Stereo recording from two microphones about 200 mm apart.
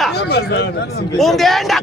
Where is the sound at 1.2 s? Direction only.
Centre (ahead or behind).